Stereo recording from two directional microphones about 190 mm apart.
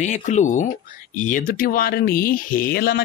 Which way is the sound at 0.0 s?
40° left (ahead or behind).